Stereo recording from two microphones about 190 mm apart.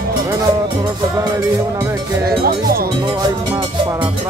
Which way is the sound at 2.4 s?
50° right (ahead or behind).